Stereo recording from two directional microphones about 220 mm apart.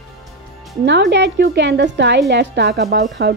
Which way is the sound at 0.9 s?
50° right (ahead or behind).